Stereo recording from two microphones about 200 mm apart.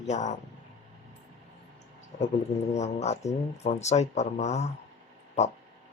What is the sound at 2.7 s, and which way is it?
Speech, 35° left (ahead or behind).